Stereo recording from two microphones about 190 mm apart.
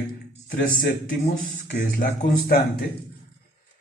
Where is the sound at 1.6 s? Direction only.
50° left (ahead or behind).